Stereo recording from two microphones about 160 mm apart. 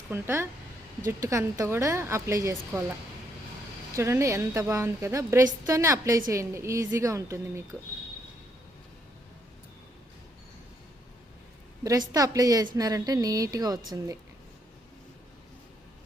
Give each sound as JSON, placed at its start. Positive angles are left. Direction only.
{"t": 0.1, "sound": "a woman's voice", "side_deg": -15}
{"t": 3.9, "sound": "a woman's voice", "side_deg": -15}
{"t": 11.8, "sound": "a woman's voice", "side_deg": -20}